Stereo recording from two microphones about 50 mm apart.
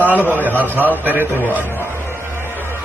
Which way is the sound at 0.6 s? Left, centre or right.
Left.